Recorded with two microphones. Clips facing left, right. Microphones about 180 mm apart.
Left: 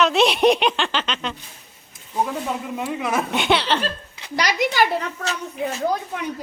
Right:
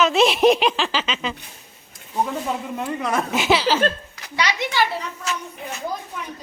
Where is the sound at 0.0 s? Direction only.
Centre (ahead or behind).